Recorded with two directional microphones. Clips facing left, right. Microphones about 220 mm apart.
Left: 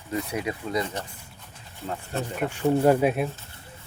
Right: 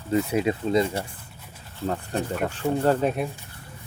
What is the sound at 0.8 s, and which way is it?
Speech, 10° right (ahead or behind).